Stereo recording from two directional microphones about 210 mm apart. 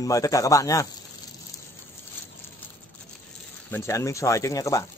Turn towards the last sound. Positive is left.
turn(degrees=15)  # may be behind; listen again after turning